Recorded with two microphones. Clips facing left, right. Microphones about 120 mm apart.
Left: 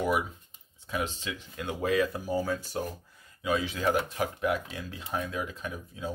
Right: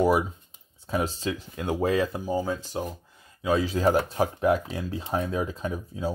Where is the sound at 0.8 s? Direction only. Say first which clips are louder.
Right 6 dB; 35° right (ahead or behind); by 3.0 s 20° right (ahead or behind).